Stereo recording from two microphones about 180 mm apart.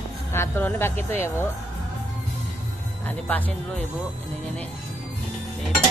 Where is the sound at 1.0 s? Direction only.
35° right (ahead or behind).